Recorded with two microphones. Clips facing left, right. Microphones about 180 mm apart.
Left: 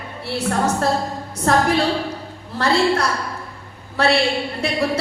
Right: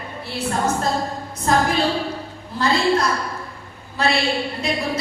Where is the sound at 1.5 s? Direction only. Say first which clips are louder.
Left 2 dB; 70° left (ahead or behind).